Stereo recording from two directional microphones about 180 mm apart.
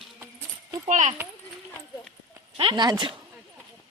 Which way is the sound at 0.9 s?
45° right (ahead or behind).